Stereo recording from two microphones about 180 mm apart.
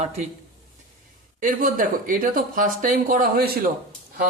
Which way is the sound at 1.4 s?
50° right (ahead or behind).